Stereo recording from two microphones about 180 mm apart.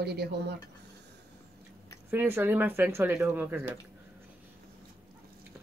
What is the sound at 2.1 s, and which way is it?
Speech, 10° right (ahead or behind).